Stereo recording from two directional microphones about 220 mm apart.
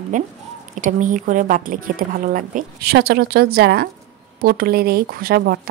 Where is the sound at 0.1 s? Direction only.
35° right (ahead or behind).